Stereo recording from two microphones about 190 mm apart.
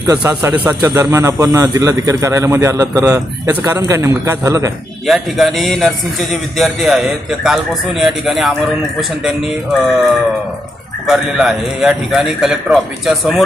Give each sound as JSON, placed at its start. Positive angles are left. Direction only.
{"t": 0.1, "sound": "speech", "side_deg": -15}
{"t": 5.0, "sound": "a man's voice", "side_deg": 0}